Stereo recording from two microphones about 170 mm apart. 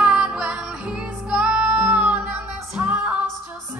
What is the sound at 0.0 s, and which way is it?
Music, 5° right (ahead or behind).